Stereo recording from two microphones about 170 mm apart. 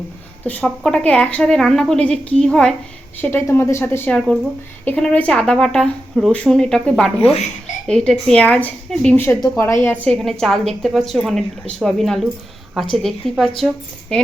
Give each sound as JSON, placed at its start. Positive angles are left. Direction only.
{"t": 0.4, "sound": "a woman's voice", "side_deg": 5}